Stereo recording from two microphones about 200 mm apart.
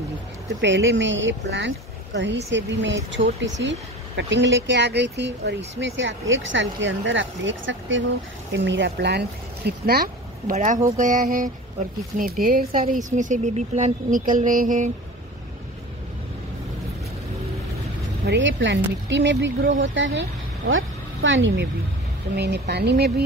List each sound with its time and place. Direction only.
0.6 s speech: 65° right (ahead or behind)
10.5 s speech: 35° right (ahead or behind)
18.2 s speech: 65° right (ahead or behind)